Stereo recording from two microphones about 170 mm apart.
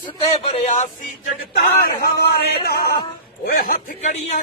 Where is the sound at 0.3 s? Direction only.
35° left (ahead or behind).